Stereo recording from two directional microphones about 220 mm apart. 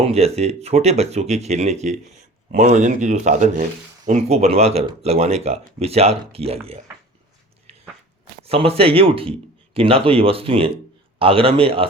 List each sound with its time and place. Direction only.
0.0 s speech: 30° right (ahead or behind)
8.4 s speech: 25° right (ahead or behind)